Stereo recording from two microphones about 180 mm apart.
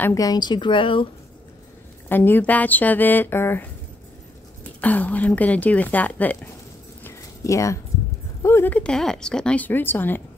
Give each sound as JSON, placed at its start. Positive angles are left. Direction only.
{"t": 0.0, "sound": "speech", "side_deg": 20}
{"t": 2.0, "sound": "speech", "side_deg": 10}
{"t": 4.8, "sound": "speech", "side_deg": 10}
{"t": 7.0, "sound": "a sound", "side_deg": 15}
{"t": 8.4, "sound": "speech", "side_deg": 15}